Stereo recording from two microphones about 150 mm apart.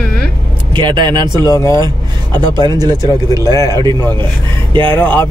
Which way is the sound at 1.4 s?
20° left (ahead or behind).